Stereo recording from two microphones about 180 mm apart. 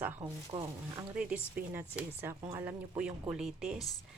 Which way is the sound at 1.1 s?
10° right (ahead or behind).